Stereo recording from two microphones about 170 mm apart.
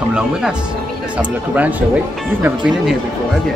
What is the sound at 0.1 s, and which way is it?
Speech, 5° right (ahead or behind).